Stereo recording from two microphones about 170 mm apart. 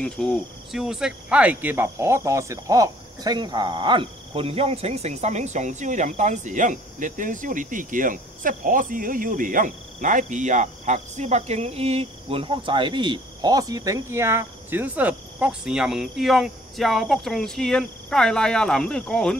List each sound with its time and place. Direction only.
0.0 s speech: centre (ahead or behind)